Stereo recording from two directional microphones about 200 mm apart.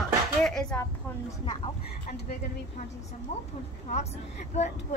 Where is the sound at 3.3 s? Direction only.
35° left (ahead or behind).